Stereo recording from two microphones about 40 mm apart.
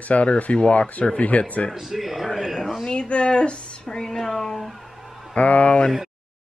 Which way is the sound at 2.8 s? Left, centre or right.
Left.